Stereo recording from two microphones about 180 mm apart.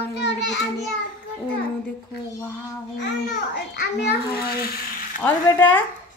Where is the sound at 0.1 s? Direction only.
75° left (ahead or behind).